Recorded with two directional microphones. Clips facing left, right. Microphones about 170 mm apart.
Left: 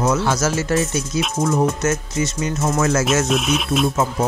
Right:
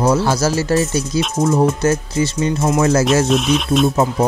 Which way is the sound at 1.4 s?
30° right (ahead or behind).